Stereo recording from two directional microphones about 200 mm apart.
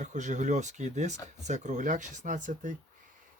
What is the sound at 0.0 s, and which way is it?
Speech, 35° right (ahead or behind).